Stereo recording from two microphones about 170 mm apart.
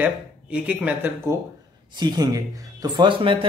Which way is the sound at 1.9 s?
25° right (ahead or behind).